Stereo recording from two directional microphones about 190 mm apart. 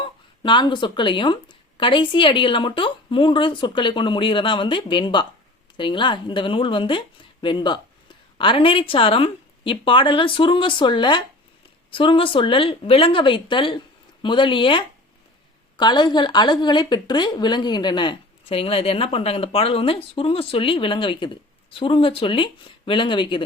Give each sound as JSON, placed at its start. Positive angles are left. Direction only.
{"t": 0.4, "sound": "a woman's voice", "side_deg": 25}